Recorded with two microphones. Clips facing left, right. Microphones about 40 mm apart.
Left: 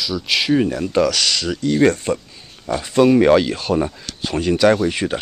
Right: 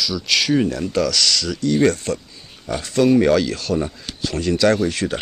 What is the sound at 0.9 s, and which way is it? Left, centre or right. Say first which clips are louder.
Speech: left 2 dB; left.